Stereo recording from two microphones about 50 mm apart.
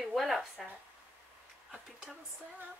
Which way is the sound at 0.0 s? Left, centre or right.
Centre.